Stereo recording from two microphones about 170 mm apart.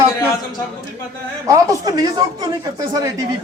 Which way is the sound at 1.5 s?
20° right (ahead or behind).